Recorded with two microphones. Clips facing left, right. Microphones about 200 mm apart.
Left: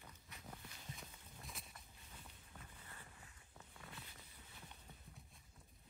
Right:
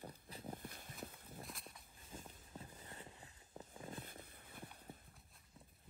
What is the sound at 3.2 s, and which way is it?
Walk, 30° right (ahead or behind).